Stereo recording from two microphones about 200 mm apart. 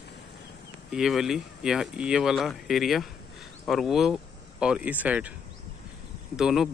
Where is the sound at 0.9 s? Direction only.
Centre (ahead or behind).